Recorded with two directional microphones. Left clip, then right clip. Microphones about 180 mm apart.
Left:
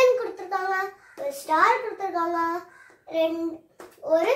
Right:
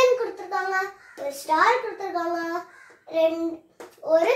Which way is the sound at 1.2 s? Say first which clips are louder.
Right 1 dB; centre (ahead or behind).